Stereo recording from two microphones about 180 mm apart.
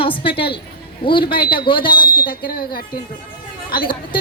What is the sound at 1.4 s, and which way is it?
Speech, 55° left (ahead or behind).